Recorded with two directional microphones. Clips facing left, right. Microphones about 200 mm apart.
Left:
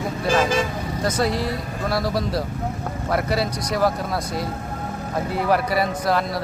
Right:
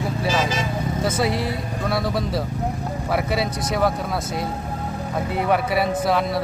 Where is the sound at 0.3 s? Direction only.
55° left (ahead or behind).